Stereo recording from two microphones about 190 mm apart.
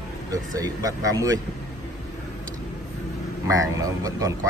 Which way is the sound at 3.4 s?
15° right (ahead or behind).